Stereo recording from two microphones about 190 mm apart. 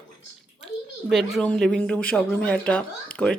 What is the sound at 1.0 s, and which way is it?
Speech, centre (ahead or behind).